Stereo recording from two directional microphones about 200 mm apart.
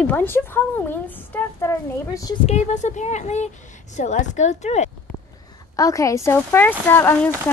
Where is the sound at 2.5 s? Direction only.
35° left (ahead or behind).